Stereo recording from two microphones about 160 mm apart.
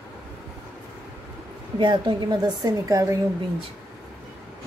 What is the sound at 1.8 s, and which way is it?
A woman's voice, 30° right (ahead or behind).